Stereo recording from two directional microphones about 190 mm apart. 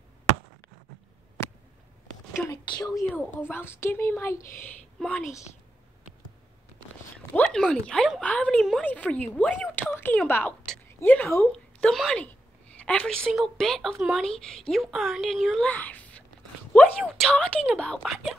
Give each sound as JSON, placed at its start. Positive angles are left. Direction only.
{"t": 2.6, "sound": "speech", "side_deg": 25}
{"t": 3.1, "sound": "a woman's voice", "side_deg": 10}
{"t": 7.3, "sound": "a woman's voice", "side_deg": 5}